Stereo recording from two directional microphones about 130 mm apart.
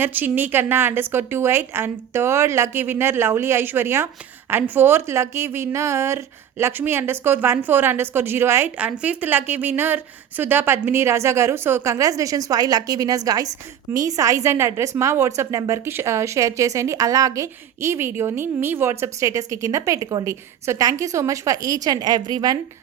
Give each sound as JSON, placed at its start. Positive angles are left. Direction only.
{"t": 0.0, "sound": "a woman's voice", "side_deg": -15}